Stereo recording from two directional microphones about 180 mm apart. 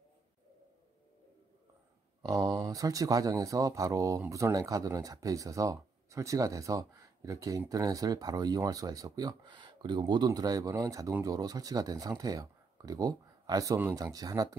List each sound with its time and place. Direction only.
2.2 s speech: 20° right (ahead or behind)